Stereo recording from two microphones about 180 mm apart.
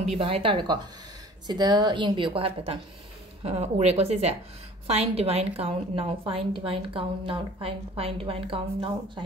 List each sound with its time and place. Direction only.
0.2 s a woman's voice: 30° right (ahead or behind)